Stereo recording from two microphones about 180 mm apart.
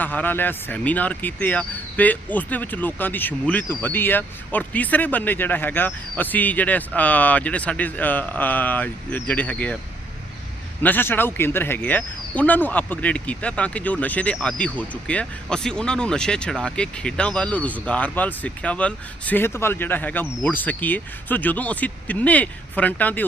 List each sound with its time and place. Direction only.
0.0 s speech: 10° left (ahead or behind)
10.8 s speech: 10° left (ahead or behind)